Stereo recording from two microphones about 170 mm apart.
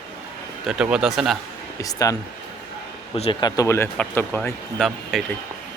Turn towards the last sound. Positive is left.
turn(degrees=5)  # may be behind; listen again after turning